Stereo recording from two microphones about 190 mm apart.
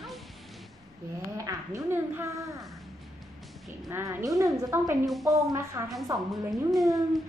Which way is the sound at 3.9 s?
15° right (ahead or behind).